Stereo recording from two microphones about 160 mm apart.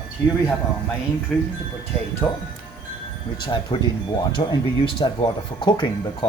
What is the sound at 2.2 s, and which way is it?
Speech, 15° left (ahead or behind).